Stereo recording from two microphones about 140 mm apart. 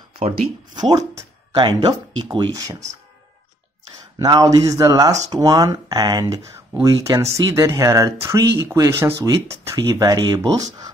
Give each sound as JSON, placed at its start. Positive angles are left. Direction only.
{"t": 0.7, "sound": "speech", "side_deg": -25}
{"t": 4.2, "sound": "speech", "side_deg": -30}